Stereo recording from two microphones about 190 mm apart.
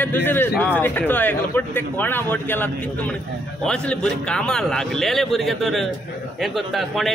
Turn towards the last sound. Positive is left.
turn(degrees=0)  # may be behind; listen again after turning